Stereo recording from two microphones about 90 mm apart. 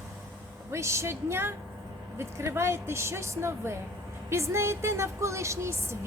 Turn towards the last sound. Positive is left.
turn(degrees=-30)  # may be behind; listen again after turning